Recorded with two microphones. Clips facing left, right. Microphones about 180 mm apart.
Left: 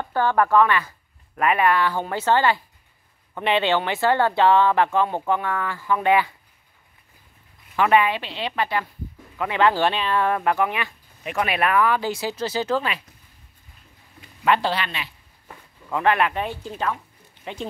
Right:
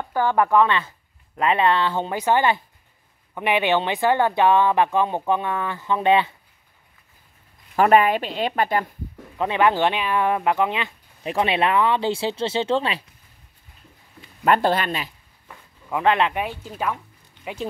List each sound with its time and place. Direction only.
0.0 s speech: 10° right (ahead or behind)
7.7 s speech: 40° right (ahead or behind)
9.4 s speech: 20° right (ahead or behind)
14.4 s speech: 45° right (ahead or behind)
15.9 s speech: 20° right (ahead or behind)
16.3 s speech: 5° right (ahead or behind)